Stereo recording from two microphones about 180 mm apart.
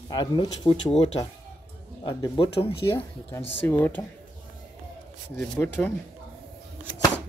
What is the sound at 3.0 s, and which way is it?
Speech, 10° left (ahead or behind).